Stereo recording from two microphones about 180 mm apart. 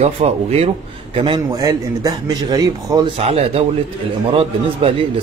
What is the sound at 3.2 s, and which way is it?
A man's voice, 35° right (ahead or behind).